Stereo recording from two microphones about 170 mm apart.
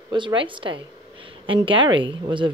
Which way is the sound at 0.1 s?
30° right (ahead or behind).